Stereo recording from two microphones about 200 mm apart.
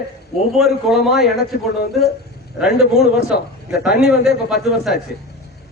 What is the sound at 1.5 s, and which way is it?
Speech, 50° left (ahead or behind).